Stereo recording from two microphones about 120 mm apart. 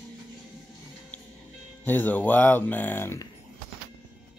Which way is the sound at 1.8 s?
15° left (ahead or behind).